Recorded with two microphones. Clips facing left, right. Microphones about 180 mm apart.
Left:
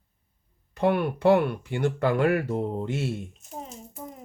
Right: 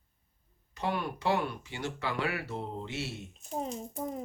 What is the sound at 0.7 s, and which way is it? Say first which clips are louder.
Speech: left 10 dB; 60° left (ahead or behind).